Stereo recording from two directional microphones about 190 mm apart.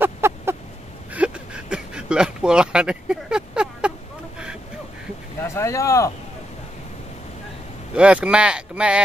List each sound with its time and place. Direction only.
0.0 s a sound: 10° right (ahead or behind)
5.4 s speech: 15° left (ahead or behind)
7.9 s speech: 5° right (ahead or behind)